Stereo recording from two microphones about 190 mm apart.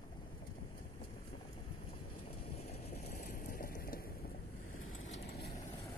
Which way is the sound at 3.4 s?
50° left (ahead or behind).